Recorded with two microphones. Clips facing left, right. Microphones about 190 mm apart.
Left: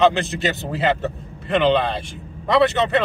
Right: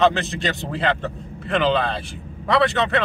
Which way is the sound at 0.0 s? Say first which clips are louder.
Left 2 dB; centre (ahead or behind).